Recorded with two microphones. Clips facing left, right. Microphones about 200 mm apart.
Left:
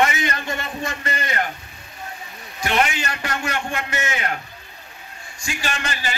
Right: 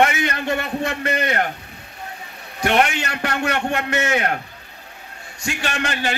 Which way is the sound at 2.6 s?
60° right (ahead or behind).